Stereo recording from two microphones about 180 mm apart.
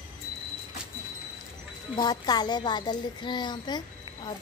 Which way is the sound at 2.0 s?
20° left (ahead or behind).